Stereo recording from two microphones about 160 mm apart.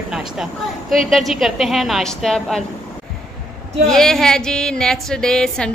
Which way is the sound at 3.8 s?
5° left (ahead or behind).